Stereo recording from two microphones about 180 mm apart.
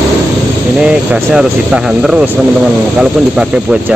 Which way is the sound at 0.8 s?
5° right (ahead or behind).